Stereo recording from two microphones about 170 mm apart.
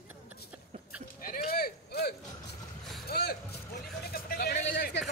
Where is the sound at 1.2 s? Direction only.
60° left (ahead or behind).